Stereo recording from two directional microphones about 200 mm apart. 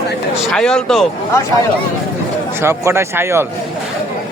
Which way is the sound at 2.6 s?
15° right (ahead or behind).